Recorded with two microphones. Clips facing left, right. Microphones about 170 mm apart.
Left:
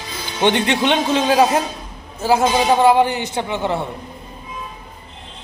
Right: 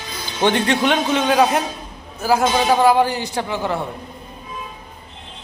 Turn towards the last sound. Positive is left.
turn(degrees=25)  # may be behind; listen again after turning